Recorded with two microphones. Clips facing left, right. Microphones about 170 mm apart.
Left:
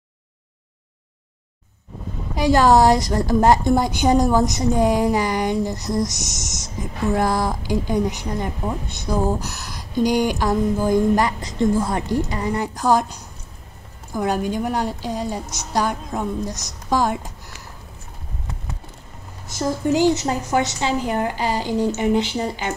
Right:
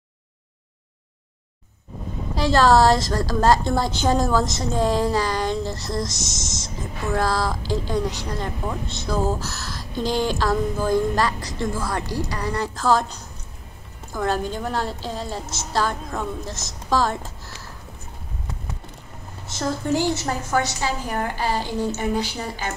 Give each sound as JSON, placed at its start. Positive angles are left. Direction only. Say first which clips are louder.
{"t": 2.3, "sound": "a woman's voice", "louder": "left 2 dB", "side_deg": 15}
{"t": 19.4, "sound": "a woman's voice", "louder": "left 4 dB", "side_deg": 10}